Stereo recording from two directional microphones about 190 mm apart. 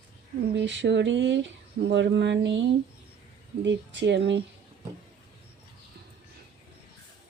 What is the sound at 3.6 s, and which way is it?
Speech, 70° right (ahead or behind).